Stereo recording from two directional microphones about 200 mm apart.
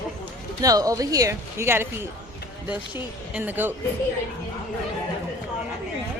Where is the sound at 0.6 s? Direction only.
15° right (ahead or behind).